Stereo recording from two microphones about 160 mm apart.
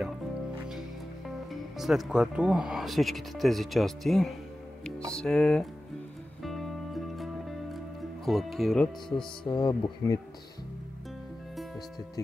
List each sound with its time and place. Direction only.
0.7 s speech: centre (ahead or behind)
6.4 s music: centre (ahead or behind)
8.3 s speech: centre (ahead or behind)
9.4 s speech: 25° left (ahead or behind)